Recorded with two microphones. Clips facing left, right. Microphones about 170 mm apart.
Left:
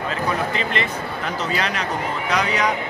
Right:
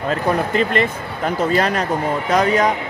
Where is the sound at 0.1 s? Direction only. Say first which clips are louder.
Right 6 dB; 45° right (ahead or behind).